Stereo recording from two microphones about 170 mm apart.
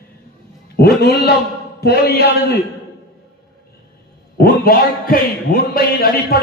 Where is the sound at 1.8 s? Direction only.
70° left (ahead or behind).